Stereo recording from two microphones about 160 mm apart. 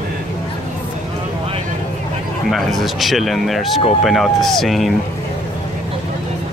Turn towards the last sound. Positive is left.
turn(degrees=0)  # may be behind; listen again after turning